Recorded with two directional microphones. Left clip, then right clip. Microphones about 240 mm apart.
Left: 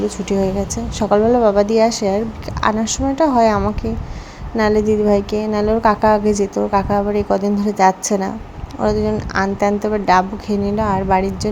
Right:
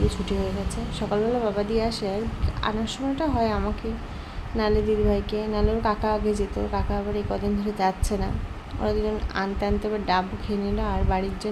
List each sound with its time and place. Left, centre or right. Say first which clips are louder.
0.9 s a woman's voice: left 11 dB; left